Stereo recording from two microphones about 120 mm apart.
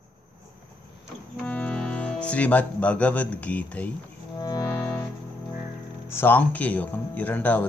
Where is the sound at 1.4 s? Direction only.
10° left (ahead or behind).